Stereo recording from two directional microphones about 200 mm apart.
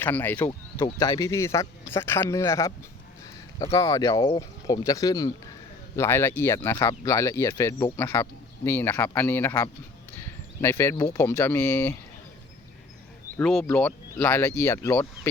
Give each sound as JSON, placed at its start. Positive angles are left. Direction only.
{"t": 0.0, "sound": "speech", "side_deg": 10}
{"t": 13.3, "sound": "speech", "side_deg": 10}